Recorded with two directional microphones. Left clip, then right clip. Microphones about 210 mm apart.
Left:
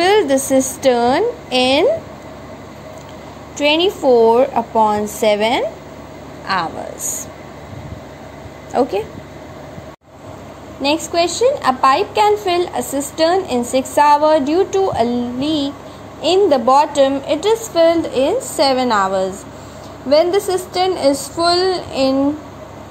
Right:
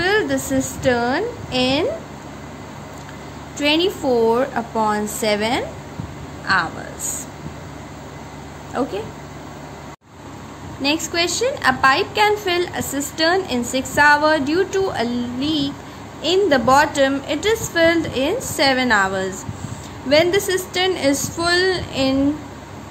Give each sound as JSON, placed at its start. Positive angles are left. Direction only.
{"t": 0.0, "sound": "a woman's voice", "side_deg": 20}
{"t": 3.5, "sound": "a woman's voice", "side_deg": 10}
{"t": 8.7, "sound": "speech", "side_deg": 20}
{"t": 10.8, "sound": "a woman's voice", "side_deg": 15}
{"t": 20.1, "sound": "a woman's voice", "side_deg": 5}